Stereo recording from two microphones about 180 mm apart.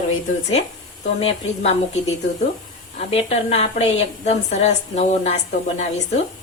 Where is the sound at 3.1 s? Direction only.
35° left (ahead or behind).